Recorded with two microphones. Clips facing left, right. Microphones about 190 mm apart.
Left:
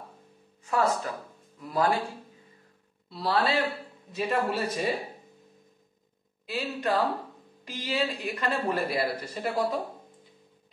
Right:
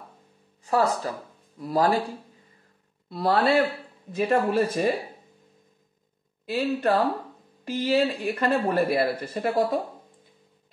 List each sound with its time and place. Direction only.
0.7 s speech: 35° right (ahead or behind)
3.1 s speech: 50° right (ahead or behind)
6.5 s speech: 45° right (ahead or behind)